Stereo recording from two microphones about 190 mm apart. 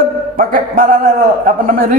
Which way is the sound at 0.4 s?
45° right (ahead or behind).